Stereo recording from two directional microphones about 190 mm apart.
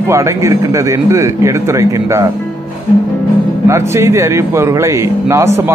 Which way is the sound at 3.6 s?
15° right (ahead or behind).